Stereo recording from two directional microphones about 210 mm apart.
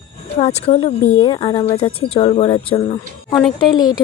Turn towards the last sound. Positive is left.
turn(degrees=20)  # may be behind; listen again after turning